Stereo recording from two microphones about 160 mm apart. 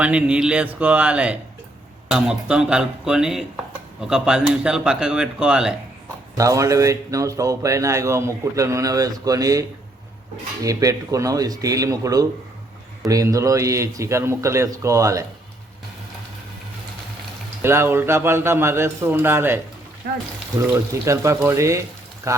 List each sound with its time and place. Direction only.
0.0 s a man's voice: 5° right (ahead or behind)
6.3 s a man's voice: 20° right (ahead or behind)
17.6 s a man's voice: 15° right (ahead or behind)
20.9 s a man's voice: 20° right (ahead or behind)